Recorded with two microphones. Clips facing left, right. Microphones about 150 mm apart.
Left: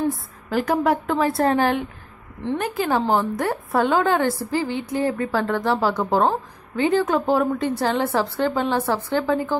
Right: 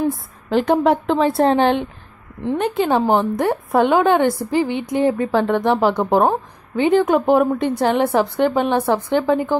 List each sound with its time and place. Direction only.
0.5 s a woman's voice: 25° right (ahead or behind)